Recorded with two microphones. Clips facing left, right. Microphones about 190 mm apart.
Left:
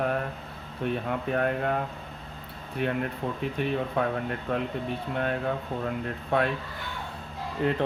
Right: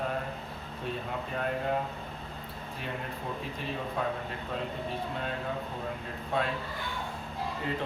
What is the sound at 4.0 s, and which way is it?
Speech, 70° left (ahead or behind).